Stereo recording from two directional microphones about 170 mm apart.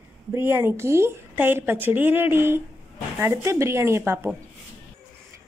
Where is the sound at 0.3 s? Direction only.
15° right (ahead or behind).